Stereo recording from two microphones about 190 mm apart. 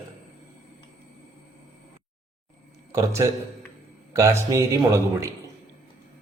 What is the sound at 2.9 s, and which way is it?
Speech, 15° right (ahead or behind).